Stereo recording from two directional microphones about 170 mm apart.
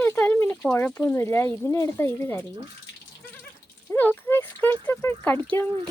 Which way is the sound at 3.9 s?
10° left (ahead or behind).